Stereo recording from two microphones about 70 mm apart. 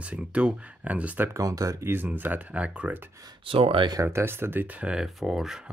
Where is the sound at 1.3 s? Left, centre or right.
Right.